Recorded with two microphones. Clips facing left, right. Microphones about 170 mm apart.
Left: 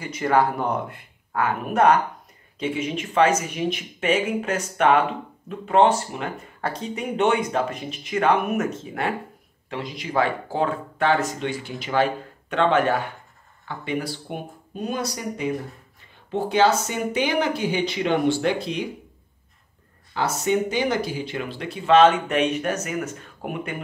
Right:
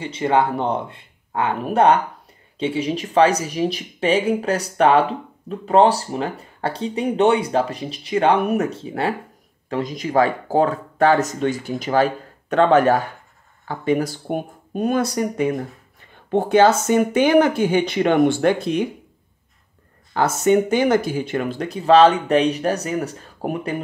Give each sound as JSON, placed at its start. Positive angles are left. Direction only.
{"t": 0.0, "sound": "speech", "side_deg": -25}
{"t": 9.7, "sound": "speech", "side_deg": -45}
{"t": 20.2, "sound": "speech", "side_deg": -50}